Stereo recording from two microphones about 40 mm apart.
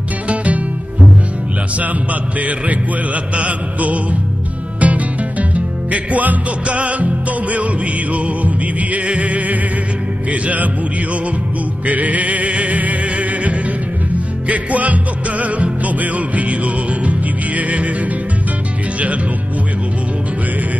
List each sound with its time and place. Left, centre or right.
3.3 s music: right
11.8 s music: right